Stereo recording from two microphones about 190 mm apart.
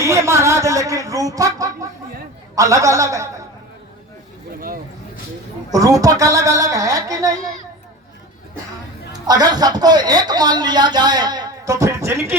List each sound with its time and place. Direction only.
0.0 s chicken: 15° right (ahead or behind)
2.6 s speech: 15° right (ahead or behind)
5.7 s speech: 20° right (ahead or behind)
9.2 s speech: 20° right (ahead or behind)